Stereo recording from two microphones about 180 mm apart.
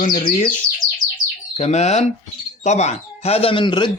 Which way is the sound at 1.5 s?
40° left (ahead or behind).